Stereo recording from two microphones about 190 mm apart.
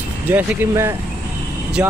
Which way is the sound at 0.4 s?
10° right (ahead or behind).